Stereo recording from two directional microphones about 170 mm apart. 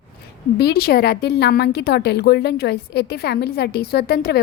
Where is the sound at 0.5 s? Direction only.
65° left (ahead or behind).